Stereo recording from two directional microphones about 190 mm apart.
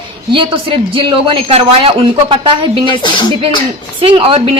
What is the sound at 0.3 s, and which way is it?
Speech, 25° right (ahead or behind).